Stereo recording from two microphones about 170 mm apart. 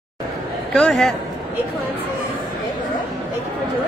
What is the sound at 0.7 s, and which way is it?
Speech, 5° left (ahead or behind).